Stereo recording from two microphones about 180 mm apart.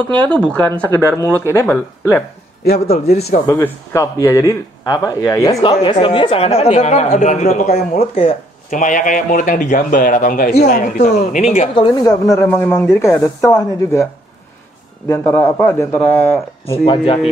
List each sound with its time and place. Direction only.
0.1 s speech: 5° left (ahead or behind)
2.6 s speech: 60° left (ahead or behind)
3.4 s speech: 15° left (ahead or behind); by 8.0 s 50° left (ahead or behind)
8.0 s speech: 30° left (ahead or behind)
8.6 s a man's voice: 45° left (ahead or behind)
10.8 s speech: 40° left (ahead or behind)
11.7 s speech: 25° left (ahead or behind)
15.0 s speech: 10° left (ahead or behind)
16.7 s speech: 30° left (ahead or behind)